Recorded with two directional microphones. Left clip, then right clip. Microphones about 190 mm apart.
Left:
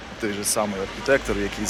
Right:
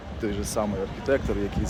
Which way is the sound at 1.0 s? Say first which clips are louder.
Left 5 dB; centre (ahead or behind).